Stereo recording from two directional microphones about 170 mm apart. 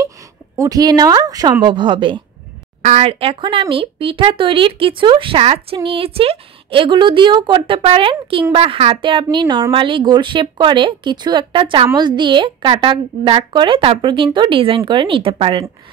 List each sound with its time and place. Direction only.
0.6 s a woman's voice: 20° right (ahead or behind)
2.8 s a woman's voice: 40° right (ahead or behind)